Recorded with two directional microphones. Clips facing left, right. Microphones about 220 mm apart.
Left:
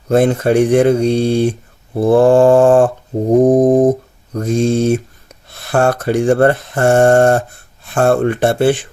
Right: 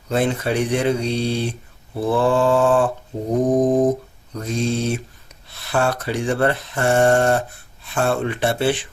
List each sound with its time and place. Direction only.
0.1 s speech: 50° left (ahead or behind)